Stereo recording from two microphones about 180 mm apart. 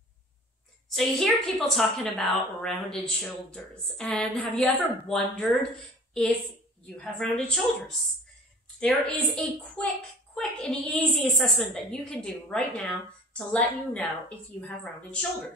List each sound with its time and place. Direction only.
0.8 s a woman's voice: centre (ahead or behind)
8.7 s a woman's voice: 5° left (ahead or behind)